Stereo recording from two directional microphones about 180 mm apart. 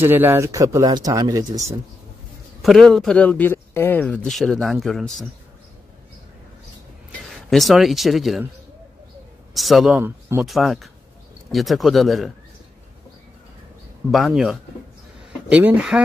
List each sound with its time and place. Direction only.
0.0 s speech: 10° right (ahead or behind)
2.6 s speech: centre (ahead or behind)
7.2 s speech: centre (ahead or behind)
9.5 s speech: centre (ahead or behind)
9.9 s speech: 10° right (ahead or behind)
10.4 s speech: centre (ahead or behind)
14.1 s speech: centre (ahead or behind)